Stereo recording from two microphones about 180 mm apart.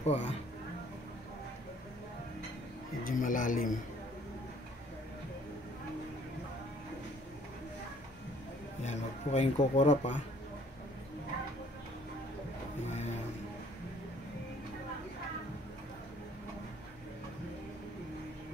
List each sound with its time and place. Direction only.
0.0 s speech: 35° left (ahead or behind)
3.0 s a man's voice: 50° left (ahead or behind)
8.8 s speech: 40° left (ahead or behind)